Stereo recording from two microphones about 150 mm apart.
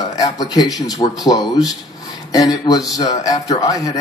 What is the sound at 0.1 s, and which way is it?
Speech, 25° left (ahead or behind).